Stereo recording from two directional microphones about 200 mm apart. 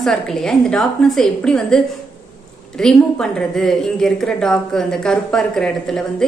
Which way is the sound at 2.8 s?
5° left (ahead or behind).